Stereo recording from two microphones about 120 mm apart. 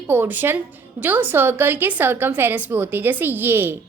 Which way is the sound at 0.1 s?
15° right (ahead or behind).